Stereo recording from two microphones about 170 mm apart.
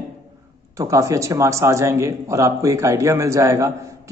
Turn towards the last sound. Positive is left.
turn(degrees=-15)  # may be behind; listen again after turning